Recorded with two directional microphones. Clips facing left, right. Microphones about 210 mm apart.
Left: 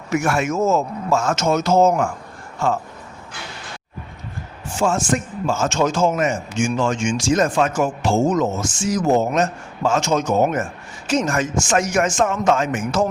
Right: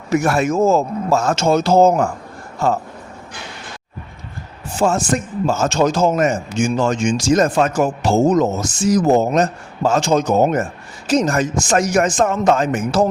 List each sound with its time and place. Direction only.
0.1 s a man's voice: 35° right (ahead or behind)
4.8 s a man's voice: 35° right (ahead or behind)